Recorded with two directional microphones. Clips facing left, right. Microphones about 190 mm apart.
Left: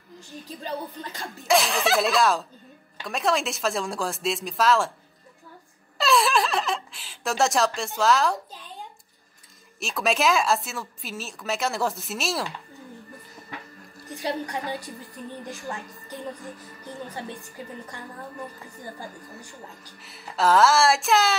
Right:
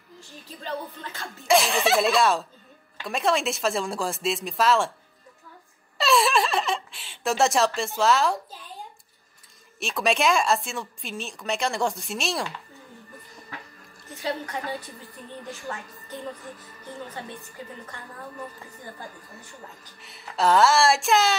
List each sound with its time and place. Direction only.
0.7 s music: 15° left (ahead or behind)
1.5 s a woman's voice: centre (ahead or behind)
5.9 s speech: centre (ahead or behind)
9.8 s a woman's voice: centre (ahead or behind)
14.0 s speech: 15° left (ahead or behind)
15.7 s music: 15° left (ahead or behind)
20.0 s a woman's voice: centre (ahead or behind)